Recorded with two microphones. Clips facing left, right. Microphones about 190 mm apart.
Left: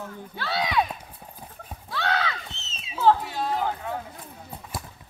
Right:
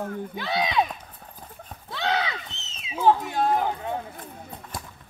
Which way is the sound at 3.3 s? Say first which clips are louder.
Right 5 dB; 50° right (ahead or behind).